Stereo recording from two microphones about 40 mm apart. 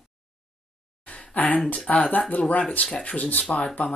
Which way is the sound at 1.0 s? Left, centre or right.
Left.